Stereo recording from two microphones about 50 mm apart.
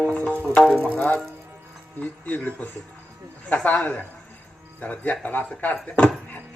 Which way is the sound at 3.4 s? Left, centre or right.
Left.